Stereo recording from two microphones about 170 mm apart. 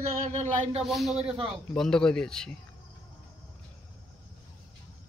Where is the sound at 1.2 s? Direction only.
35° right (ahead or behind).